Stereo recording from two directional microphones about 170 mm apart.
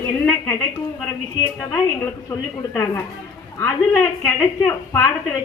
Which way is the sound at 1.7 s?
20° left (ahead or behind).